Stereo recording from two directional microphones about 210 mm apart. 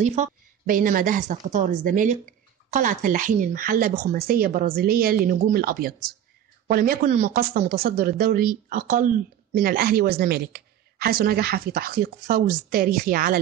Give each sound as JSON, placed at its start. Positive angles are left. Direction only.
{"t": 0.0, "sound": "speech", "side_deg": -35}